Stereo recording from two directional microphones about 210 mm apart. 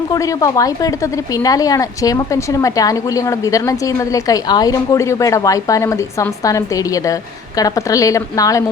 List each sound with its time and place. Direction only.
0.1 s a woman's voice: 15° left (ahead or behind)